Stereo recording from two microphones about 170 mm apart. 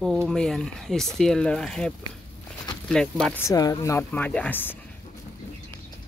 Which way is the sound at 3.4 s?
20° left (ahead or behind).